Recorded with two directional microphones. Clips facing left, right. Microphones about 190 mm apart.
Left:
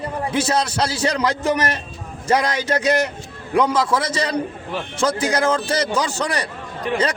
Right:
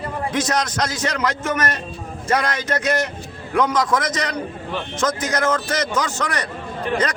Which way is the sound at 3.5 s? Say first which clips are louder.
Left 2 dB; 10° left (ahead or behind).